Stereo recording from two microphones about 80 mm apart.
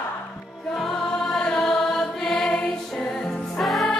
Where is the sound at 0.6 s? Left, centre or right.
Centre.